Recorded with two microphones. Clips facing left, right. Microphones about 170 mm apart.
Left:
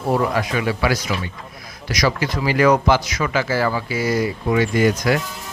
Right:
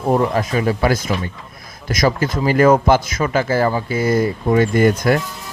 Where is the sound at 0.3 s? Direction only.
40° right (ahead or behind).